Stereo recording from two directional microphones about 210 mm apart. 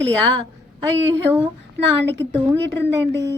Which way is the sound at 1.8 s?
55° right (ahead or behind).